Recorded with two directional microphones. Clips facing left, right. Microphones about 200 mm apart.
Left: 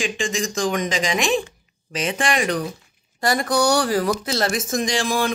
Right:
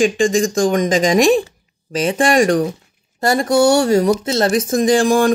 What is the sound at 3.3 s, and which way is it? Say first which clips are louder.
Speech: right 7 dB; 25° right (ahead or behind).